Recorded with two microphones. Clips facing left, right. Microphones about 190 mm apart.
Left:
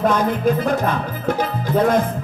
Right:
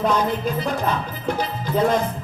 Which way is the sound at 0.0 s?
50° left (ahead or behind).